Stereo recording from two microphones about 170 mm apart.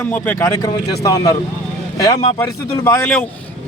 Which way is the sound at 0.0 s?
10° left (ahead or behind).